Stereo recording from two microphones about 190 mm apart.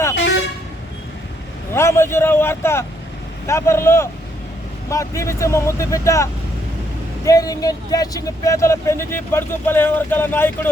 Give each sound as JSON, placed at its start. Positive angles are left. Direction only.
{"t": 1.7, "sound": "a man's voice", "side_deg": 15}
{"t": 7.3, "sound": "speech", "side_deg": 20}